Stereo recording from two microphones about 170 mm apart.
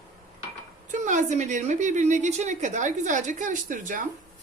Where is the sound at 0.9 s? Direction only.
50° right (ahead or behind).